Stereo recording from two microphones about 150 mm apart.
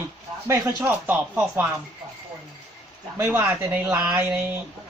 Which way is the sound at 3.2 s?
15° right (ahead or behind).